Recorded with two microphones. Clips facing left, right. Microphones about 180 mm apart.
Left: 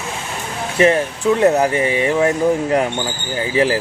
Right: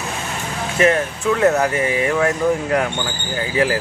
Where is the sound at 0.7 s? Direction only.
30° left (ahead or behind).